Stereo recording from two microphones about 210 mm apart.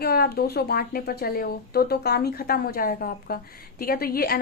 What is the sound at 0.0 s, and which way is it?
A woman's voice, 50° left (ahead or behind).